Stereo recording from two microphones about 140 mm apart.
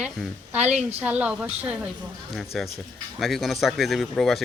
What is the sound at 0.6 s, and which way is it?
Speech, 55° right (ahead or behind).